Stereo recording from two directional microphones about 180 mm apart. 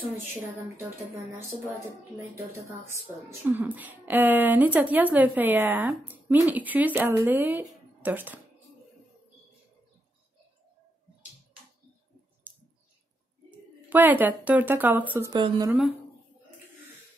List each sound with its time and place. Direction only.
0.7 s a woman's voice: 15° right (ahead or behind)
2.9 s a woman's voice: 15° right (ahead or behind)
12.5 s a sound: 10° right (ahead or behind)
13.8 s a woman's voice: 10° right (ahead or behind)
15.3 s a woman's voice: 25° right (ahead or behind)